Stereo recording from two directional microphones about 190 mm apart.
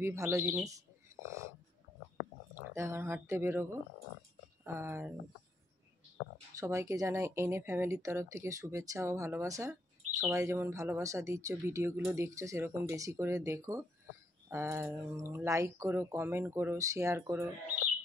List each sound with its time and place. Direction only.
0.0 s speech: 15° right (ahead or behind)
2.7 s speech: 15° right (ahead or behind)
4.6 s speech: 15° right (ahead or behind)
6.6 s speech: 15° right (ahead or behind)